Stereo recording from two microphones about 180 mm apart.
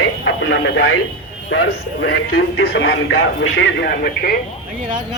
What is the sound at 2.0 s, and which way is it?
Speech, 65° left (ahead or behind).